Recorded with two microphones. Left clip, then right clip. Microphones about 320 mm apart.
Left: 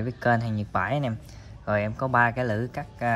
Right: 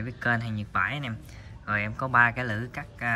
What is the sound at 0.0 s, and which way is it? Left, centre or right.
Speech, centre.